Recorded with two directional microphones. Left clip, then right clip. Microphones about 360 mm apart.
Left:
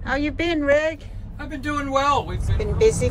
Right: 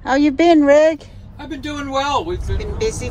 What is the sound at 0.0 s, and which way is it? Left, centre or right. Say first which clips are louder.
Speech: right 9 dB; centre.